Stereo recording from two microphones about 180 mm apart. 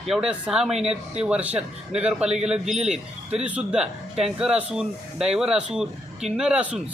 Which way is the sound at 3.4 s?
5° right (ahead or behind).